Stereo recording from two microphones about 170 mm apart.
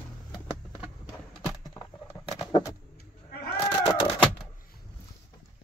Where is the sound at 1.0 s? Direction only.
Centre (ahead or behind).